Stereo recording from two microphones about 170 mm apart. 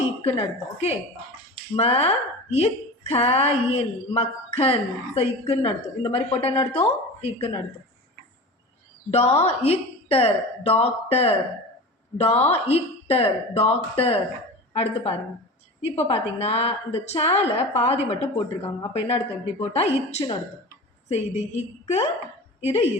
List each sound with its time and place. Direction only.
0.3 s a woman's voice: 40° left (ahead or behind)
9.0 s a woman's voice: 40° left (ahead or behind)
16.0 s a woman's voice: 35° left (ahead or behind)